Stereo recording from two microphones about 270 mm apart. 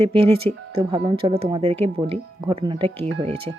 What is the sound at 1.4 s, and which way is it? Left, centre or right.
Speech, centre.